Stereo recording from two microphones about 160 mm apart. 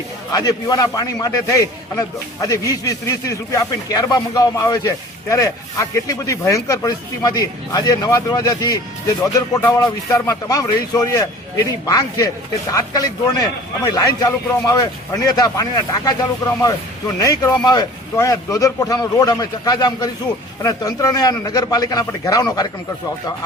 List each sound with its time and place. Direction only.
0.3 s a man's voice: 25° left (ahead or behind)
17.2 s a man's voice: 20° left (ahead or behind)